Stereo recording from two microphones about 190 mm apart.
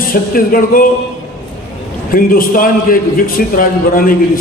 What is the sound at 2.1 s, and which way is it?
A man's voice, 50° left (ahead or behind).